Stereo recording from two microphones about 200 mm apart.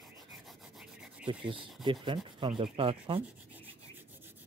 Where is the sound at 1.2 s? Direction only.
25° right (ahead or behind).